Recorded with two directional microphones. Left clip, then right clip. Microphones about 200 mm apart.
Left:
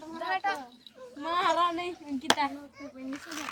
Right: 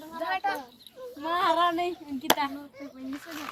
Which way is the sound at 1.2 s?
10° right (ahead or behind).